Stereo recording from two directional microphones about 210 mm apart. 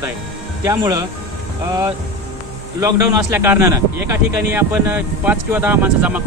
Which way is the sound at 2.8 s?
10° right (ahead or behind).